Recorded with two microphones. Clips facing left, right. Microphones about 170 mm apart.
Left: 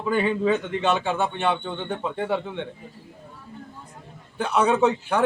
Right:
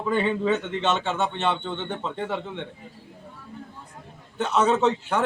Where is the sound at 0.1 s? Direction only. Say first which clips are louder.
Left 1 dB; 5° left (ahead or behind).